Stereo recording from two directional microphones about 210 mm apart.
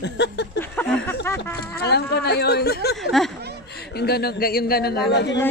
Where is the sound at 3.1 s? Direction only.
Centre (ahead or behind).